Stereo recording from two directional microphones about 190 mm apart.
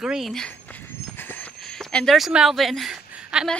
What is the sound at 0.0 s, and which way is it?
Speech, centre (ahead or behind).